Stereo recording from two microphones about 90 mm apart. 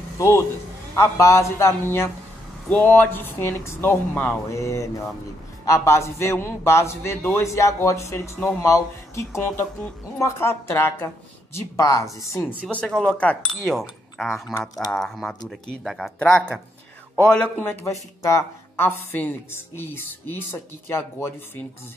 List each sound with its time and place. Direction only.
0.2 s a man's voice: 30° left (ahead or behind)
2.7 s a woman's voice: 15° left (ahead or behind)
11.5 s a man's voice: 40° left (ahead or behind)
12.9 s speech: 10° left (ahead or behind)
13.7 s speech: centre (ahead or behind)
17.6 s a woman's voice: 25° left (ahead or behind)
17.9 s a man's voice: 35° left (ahead or behind)
18.8 s a woman's voice: 20° left (ahead or behind)